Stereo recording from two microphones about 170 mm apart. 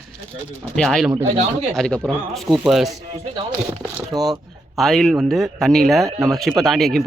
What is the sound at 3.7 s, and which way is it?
Speech, 15° right (ahead or behind).